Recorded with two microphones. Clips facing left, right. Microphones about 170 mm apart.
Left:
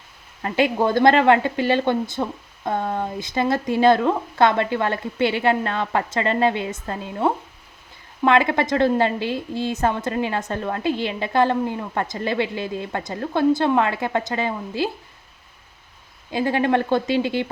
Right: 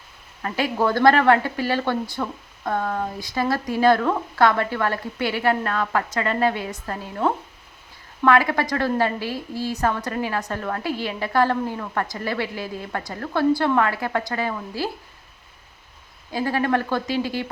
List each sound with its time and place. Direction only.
0.4 s speech: 25° left (ahead or behind)
16.3 s speech: 20° left (ahead or behind)